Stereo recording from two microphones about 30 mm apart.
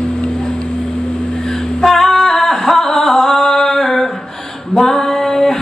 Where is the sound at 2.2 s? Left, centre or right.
Centre.